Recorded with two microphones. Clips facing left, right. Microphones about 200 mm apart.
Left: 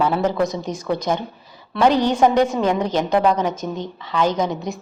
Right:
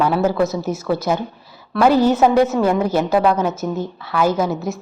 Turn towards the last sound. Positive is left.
turn(degrees=-5)  # may be behind; listen again after turning